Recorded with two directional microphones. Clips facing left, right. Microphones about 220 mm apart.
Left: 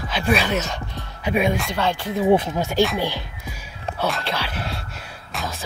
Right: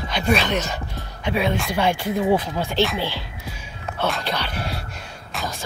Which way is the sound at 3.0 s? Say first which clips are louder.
Left 2 dB; 15° left (ahead or behind).